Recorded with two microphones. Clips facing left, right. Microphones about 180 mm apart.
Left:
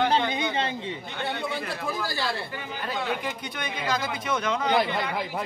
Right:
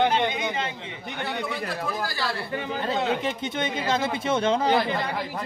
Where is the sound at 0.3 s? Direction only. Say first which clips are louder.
Left 1 dB; 30° left (ahead or behind).